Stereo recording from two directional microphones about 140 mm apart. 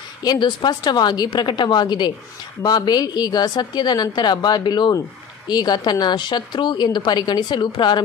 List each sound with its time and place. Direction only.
0.2 s a woman's voice: 30° left (ahead or behind)